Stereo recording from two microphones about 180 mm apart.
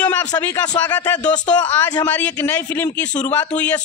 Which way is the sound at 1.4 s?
25° left (ahead or behind).